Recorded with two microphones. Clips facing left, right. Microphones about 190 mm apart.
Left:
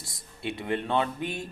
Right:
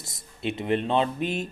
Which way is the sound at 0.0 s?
20° right (ahead or behind).